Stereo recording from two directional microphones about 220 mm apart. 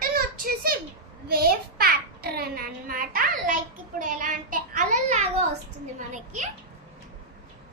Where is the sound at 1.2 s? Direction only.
45° right (ahead or behind).